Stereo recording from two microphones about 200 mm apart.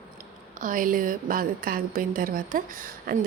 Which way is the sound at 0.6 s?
40° right (ahead or behind).